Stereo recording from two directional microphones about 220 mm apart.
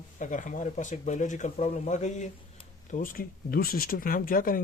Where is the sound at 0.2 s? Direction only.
35° left (ahead or behind).